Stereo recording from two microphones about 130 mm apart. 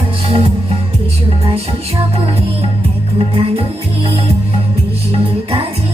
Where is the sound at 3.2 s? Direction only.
45° right (ahead or behind).